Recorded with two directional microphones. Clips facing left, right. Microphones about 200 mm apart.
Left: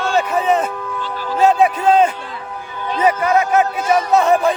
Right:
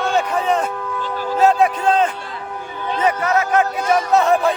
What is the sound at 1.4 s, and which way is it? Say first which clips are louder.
Music: left 1 dB; centre (ahead or behind).